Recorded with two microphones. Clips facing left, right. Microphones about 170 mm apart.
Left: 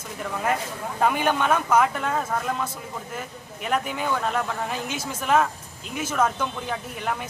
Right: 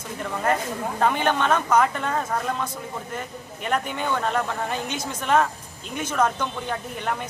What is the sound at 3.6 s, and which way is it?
Speech, 5° left (ahead or behind).